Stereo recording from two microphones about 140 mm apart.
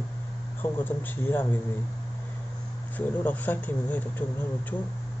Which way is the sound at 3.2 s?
10° left (ahead or behind).